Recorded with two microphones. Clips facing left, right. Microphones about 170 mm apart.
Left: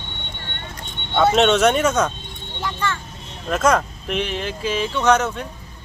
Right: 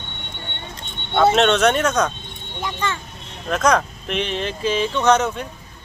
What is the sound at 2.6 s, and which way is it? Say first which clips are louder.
Speech: even; 20° right (ahead or behind).